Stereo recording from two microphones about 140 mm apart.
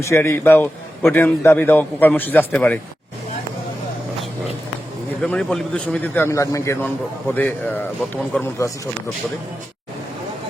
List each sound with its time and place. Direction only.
0.0 s a man's voice: 20° left (ahead or behind)
5.2 s a man's voice: 5° left (ahead or behind)